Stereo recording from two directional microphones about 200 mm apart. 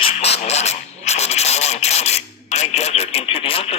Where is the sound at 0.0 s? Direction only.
30° left (ahead or behind).